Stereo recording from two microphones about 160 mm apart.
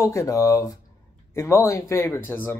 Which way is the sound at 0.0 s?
20° left (ahead or behind).